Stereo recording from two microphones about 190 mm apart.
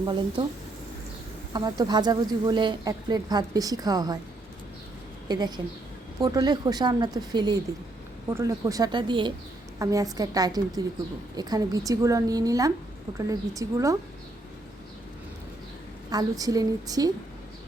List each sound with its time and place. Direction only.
0.0 s speech: 25° right (ahead or behind)
1.5 s speech: 20° right (ahead or behind)
5.3 s a woman's voice: 20° right (ahead or behind)
16.0 s speech: 20° right (ahead or behind)